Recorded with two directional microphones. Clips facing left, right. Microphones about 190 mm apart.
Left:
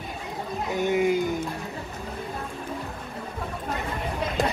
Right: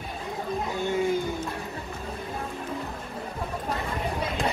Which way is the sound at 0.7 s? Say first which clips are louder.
Left 4 dB; 15° left (ahead or behind).